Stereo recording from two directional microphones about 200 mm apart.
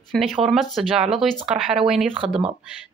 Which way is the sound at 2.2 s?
30° right (ahead or behind).